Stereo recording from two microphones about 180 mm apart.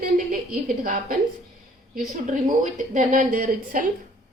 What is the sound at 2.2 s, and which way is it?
A woman's voice, 45° right (ahead or behind).